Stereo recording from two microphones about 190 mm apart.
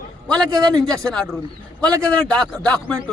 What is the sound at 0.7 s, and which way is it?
Speech, 20° right (ahead or behind).